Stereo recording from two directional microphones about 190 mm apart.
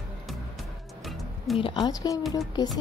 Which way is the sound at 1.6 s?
25° left (ahead or behind).